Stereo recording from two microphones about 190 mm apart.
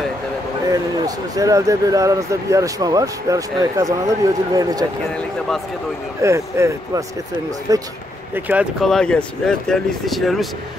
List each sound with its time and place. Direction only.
0.7 s speech: 20° right (ahead or behind)
6.2 s speech: 15° right (ahead or behind)
8.8 s speech: 5° left (ahead or behind)